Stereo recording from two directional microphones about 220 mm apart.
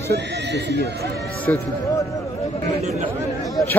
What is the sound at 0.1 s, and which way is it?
Speech, 50° right (ahead or behind).